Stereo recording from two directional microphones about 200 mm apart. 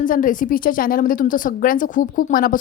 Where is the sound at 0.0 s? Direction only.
40° left (ahead or behind).